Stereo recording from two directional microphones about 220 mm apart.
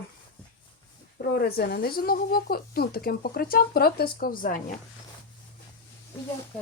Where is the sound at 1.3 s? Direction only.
45° left (ahead or behind).